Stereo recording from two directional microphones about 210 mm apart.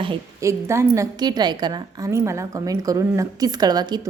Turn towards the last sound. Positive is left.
turn(degrees=-20)  # may be behind; listen again after turning